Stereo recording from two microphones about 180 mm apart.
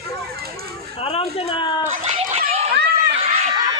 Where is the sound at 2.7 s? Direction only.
60° right (ahead or behind).